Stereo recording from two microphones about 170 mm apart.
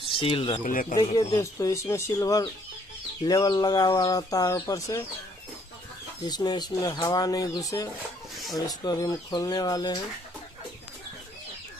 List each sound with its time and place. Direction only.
0.1 s speech: 30° left (ahead or behind)
0.7 s speech: 55° left (ahead or behind)
0.9 s speech: 20° left (ahead or behind)
6.2 s speech: 25° left (ahead or behind)